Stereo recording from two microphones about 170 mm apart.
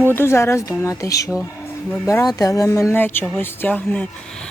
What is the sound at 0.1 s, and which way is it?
Speech, 15° left (ahead or behind).